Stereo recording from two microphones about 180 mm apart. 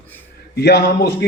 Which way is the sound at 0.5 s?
65° left (ahead or behind).